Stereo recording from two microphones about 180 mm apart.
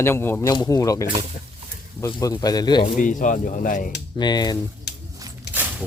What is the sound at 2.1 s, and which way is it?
Speech, 20° left (ahead or behind).